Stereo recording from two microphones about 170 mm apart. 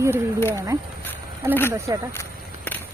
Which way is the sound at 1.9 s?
20° right (ahead or behind).